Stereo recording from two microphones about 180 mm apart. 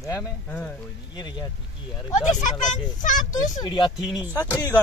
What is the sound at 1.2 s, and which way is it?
Speech, 25° left (ahead or behind).